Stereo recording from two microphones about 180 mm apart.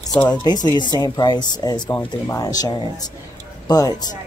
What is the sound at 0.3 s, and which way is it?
Speech, 20° left (ahead or behind).